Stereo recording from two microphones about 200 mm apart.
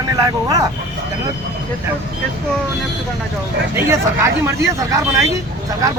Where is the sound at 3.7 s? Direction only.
10° right (ahead or behind).